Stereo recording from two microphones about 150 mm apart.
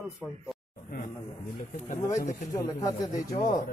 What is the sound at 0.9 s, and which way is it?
Speech, 70° left (ahead or behind).